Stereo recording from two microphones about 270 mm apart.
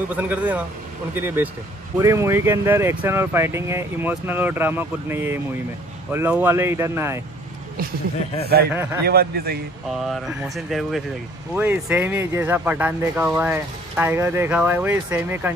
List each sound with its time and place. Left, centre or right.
0.1 s speech: centre
9.0 s a man's voice: right
9.8 s speech: centre